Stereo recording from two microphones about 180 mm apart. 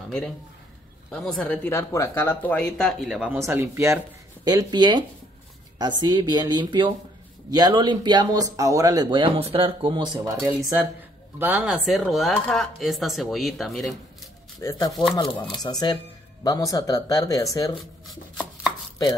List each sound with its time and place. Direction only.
1.1 s speech: centre (ahead or behind)
3.4 s speech: 15° right (ahead or behind)
14.6 s speech: 15° left (ahead or behind)
18.0 s chopping: centre (ahead or behind)